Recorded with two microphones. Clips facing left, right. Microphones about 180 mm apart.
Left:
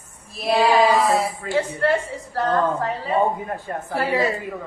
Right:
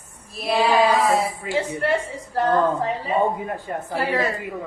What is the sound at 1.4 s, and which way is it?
Speech, 15° right (ahead or behind).